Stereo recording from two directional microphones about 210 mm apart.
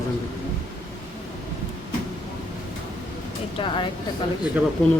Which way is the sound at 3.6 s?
25° left (ahead or behind).